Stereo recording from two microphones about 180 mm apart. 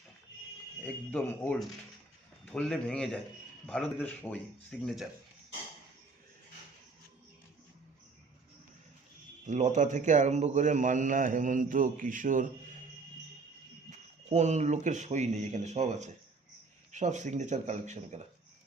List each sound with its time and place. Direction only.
0.8 s speech: 10° left (ahead or behind)
9.5 s a man's voice: 40° right (ahead or behind)
14.3 s speech: 40° right (ahead or behind)